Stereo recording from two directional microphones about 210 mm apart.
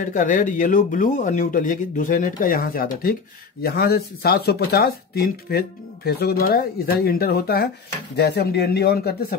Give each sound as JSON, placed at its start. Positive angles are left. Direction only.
{"t": 0.0, "sound": "speech", "side_deg": 40}